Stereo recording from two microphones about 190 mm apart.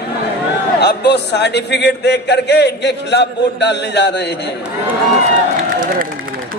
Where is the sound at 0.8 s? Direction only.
60° left (ahead or behind).